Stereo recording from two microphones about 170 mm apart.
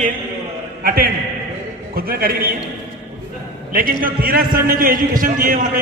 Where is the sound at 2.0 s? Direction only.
60° right (ahead or behind).